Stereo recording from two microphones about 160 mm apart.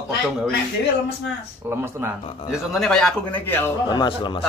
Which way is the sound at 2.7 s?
5° left (ahead or behind).